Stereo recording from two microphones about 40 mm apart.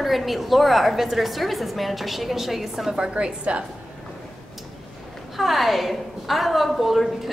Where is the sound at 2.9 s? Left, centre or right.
Right.